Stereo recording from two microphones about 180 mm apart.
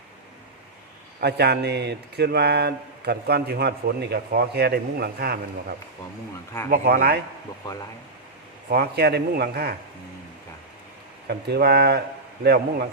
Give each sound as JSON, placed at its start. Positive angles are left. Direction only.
{"t": 1.2, "sound": "speech", "side_deg": -65}
{"t": 8.7, "sound": "speech", "side_deg": -60}
{"t": 11.3, "sound": "speech", "side_deg": -65}